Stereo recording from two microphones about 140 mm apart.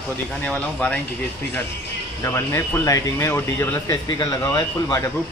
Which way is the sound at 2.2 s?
20° left (ahead or behind).